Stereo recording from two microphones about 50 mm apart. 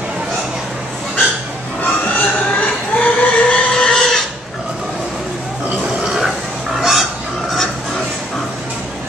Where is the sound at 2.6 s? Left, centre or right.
Left.